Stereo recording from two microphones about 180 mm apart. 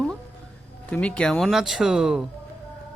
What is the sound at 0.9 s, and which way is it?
Speech, 5° left (ahead or behind).